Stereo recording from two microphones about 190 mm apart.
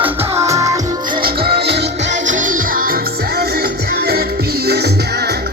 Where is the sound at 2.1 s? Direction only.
40° right (ahead or behind).